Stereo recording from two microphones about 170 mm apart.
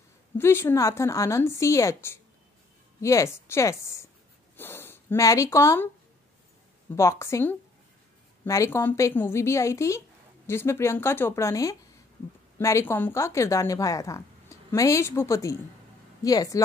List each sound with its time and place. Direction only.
0.4 s a woman's voice: 15° left (ahead or behind)
7.0 s a woman's voice: 15° left (ahead or behind)